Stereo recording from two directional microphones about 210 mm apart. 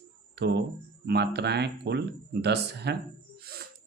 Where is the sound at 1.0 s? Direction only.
50° right (ahead or behind).